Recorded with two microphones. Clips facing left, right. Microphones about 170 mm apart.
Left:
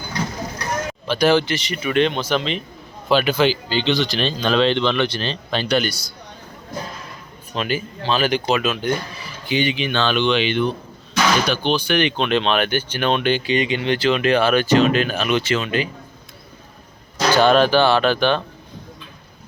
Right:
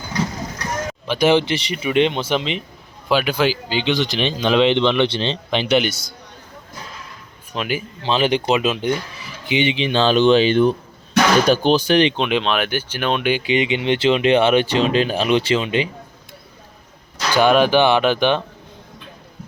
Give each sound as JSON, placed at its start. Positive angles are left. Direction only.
{"t": 1.0, "sound": "speech", "side_deg": -20}
{"t": 7.5, "sound": "speech", "side_deg": -10}
{"t": 8.0, "sound": "speech", "side_deg": -20}
{"t": 12.2, "sound": "speech", "side_deg": -5}
{"t": 17.3, "sound": "speech", "side_deg": -10}